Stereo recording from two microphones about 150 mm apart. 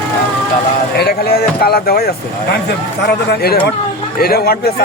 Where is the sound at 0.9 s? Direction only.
90° left.